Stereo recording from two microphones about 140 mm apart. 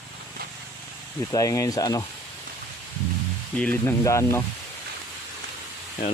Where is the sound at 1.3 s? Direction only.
25° left (ahead or behind).